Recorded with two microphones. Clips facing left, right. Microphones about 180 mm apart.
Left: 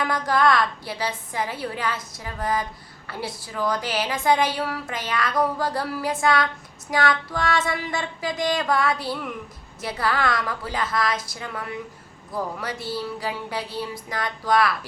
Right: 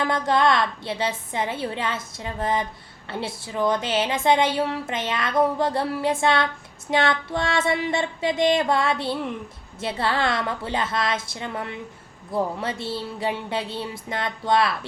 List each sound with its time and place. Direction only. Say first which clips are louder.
0.0 s a woman's voice: right 1 dB; 25° right (ahead or behind)